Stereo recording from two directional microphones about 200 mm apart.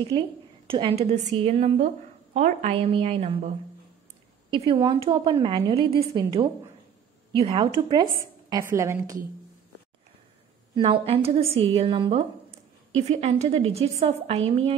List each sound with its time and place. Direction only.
0.1 s a woman's voice: 20° right (ahead or behind)
10.7 s a woman's voice: 25° right (ahead or behind)